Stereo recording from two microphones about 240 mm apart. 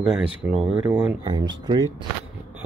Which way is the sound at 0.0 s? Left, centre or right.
Centre.